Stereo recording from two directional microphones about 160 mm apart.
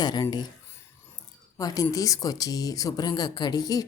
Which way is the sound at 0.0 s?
25° left (ahead or behind).